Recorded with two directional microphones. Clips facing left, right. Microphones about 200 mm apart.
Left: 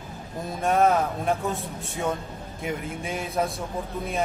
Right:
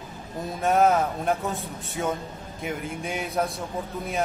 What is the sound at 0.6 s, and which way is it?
Speech, centre (ahead or behind).